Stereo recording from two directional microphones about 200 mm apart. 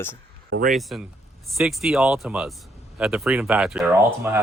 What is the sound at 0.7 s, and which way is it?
Speech, centre (ahead or behind).